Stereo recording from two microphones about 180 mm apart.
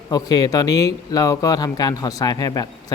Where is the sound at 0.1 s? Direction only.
20° left (ahead or behind).